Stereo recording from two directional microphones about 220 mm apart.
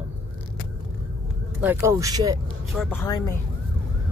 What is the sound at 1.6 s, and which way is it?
Speech, 10° right (ahead or behind).